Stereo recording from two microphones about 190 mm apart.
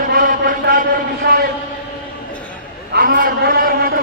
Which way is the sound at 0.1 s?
50° right (ahead or behind).